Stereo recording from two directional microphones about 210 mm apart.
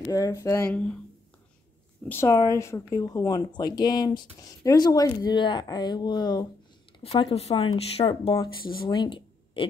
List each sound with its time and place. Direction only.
0.1 s speech: 15° left (ahead or behind)
2.0 s speech: 15° left (ahead or behind)